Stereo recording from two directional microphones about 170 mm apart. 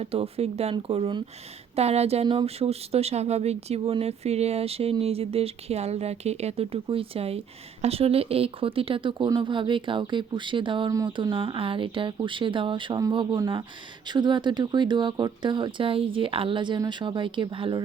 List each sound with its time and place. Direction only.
0.0 s speech: 35° right (ahead or behind)